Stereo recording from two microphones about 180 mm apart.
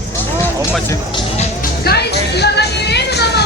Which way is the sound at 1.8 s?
65° left (ahead or behind).